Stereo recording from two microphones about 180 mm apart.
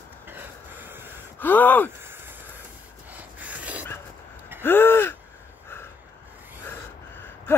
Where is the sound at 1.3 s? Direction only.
10° left (ahead or behind).